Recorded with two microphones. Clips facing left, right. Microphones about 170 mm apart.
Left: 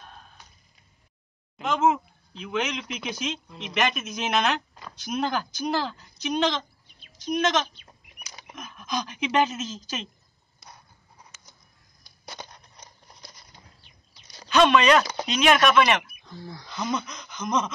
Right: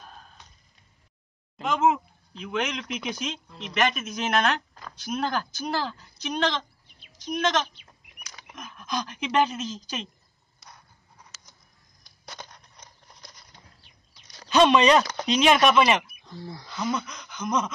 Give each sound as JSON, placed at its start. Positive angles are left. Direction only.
{"t": 0.0, "sound": "a sound", "side_deg": 0}
{"t": 1.6, "sound": "speech", "side_deg": 0}
{"t": 5.5, "sound": "speech", "side_deg": -5}
{"t": 12.0, "sound": "a sound", "side_deg": 10}
{"t": 14.6, "sound": "speech", "side_deg": -30}
{"t": 16.3, "sound": "speech", "side_deg": 0}